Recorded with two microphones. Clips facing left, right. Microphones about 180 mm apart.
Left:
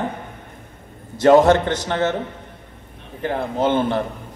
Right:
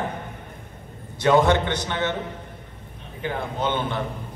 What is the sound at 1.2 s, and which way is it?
Speech, 40° left (ahead or behind).